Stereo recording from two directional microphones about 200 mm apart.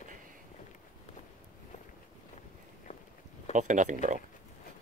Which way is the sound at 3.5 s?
40° right (ahead or behind).